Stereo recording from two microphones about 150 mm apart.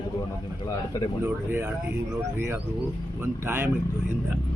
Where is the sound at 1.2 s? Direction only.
15° right (ahead or behind).